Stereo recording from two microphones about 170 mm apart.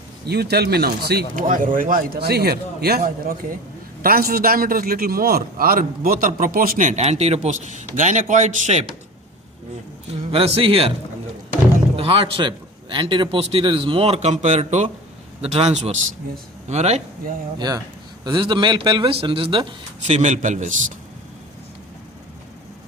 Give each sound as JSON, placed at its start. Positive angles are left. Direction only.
{"t": 0.3, "sound": "a man's voice", "side_deg": -70}
{"t": 10.3, "sound": "a man's voice", "side_deg": -35}
{"t": 11.9, "sound": "a man's voice", "side_deg": -30}
{"t": 17.6, "sound": "a man's voice", "side_deg": -25}
{"t": 20.1, "sound": "a man's voice", "side_deg": -40}